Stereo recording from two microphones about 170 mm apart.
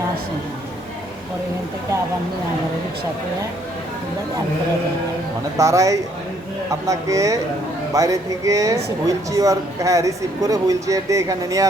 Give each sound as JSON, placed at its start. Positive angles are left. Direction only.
{"t": 5.5, "sound": "speech", "side_deg": -20}